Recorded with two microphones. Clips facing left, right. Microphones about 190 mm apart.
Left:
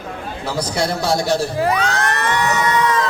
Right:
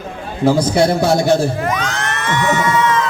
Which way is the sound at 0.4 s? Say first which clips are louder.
Right 9 dB; 50° right (ahead or behind).